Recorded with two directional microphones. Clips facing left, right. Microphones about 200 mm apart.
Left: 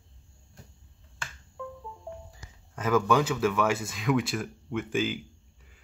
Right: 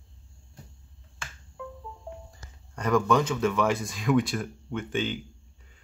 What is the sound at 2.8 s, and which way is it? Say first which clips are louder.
Speech: right 1 dB; 5° left (ahead or behind).